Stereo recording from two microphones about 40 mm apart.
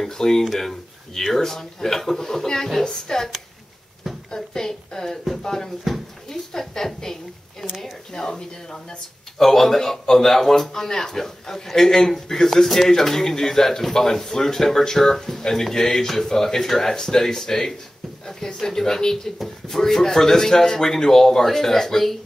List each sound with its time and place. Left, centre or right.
0.0 s a man's voice: centre
9.4 s a man's voice: centre